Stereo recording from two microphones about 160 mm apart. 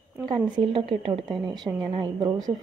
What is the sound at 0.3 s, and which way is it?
A woman's voice, 35° right (ahead or behind).